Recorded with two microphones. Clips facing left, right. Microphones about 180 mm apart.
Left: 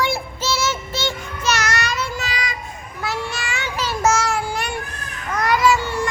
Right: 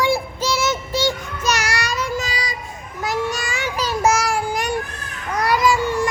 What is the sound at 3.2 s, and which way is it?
Child singing, 40° right (ahead or behind).